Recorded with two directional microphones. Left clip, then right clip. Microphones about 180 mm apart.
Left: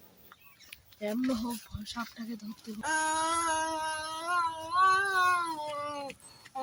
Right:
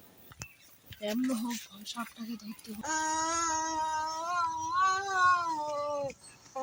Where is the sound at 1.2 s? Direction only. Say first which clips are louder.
Left 2 dB; 10° right (ahead or behind).